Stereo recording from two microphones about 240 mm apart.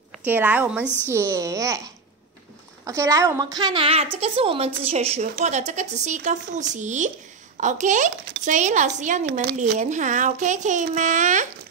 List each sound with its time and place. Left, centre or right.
0.2 s a child's voice: centre
0.8 s a woman's voice: centre
1.1 s a child's voice: centre; by 11.4 s right